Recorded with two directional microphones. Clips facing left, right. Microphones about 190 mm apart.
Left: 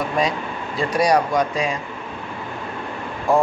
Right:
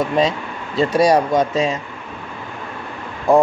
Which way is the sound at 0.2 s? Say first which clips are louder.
Right 3 dB; 25° right (ahead or behind).